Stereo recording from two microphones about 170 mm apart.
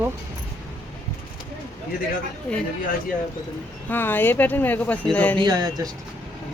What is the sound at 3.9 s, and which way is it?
Speech, 10° left (ahead or behind).